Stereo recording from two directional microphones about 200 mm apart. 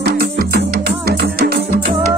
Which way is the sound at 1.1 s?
50° right (ahead or behind).